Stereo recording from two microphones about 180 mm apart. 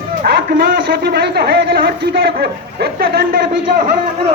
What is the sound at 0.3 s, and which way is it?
A man's voice, 65° right (ahead or behind).